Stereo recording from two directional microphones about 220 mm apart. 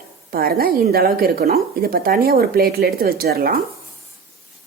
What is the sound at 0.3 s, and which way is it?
A woman's voice, 40° right (ahead or behind).